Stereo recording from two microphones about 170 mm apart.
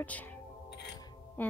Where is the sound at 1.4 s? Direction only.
10° left (ahead or behind).